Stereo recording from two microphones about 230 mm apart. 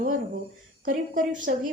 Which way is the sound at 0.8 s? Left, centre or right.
Right.